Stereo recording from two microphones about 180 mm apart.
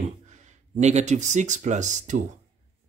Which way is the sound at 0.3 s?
40° right (ahead or behind).